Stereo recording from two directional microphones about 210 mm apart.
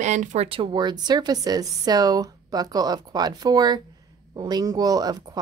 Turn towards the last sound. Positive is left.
turn(degrees=-20)  # may be behind; listen again after turning